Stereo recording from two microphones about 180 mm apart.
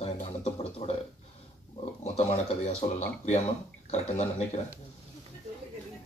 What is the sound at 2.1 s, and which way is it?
Speech, 35° left (ahead or behind).